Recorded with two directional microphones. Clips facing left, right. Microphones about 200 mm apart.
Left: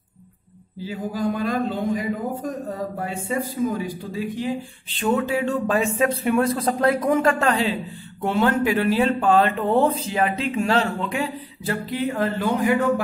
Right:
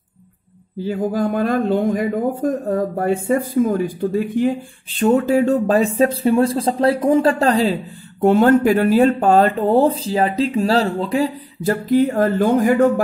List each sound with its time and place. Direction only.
0.8 s speech: 55° right (ahead or behind)